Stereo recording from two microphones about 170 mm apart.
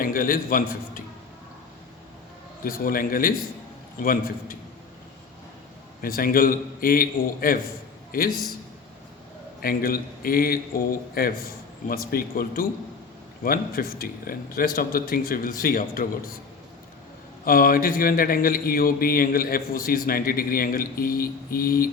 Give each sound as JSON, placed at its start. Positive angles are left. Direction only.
{"t": 0.0, "sound": "a man's voice", "side_deg": 55}
{"t": 2.6, "sound": "a man's voice", "side_deg": 60}
{"t": 6.0, "sound": "a man's voice", "side_deg": 60}
{"t": 9.6, "sound": "a man's voice", "side_deg": 60}
{"t": 17.4, "sound": "a man's voice", "side_deg": 55}